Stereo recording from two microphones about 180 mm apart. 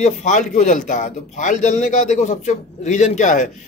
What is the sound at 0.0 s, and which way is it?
A man's voice, 40° left (ahead or behind).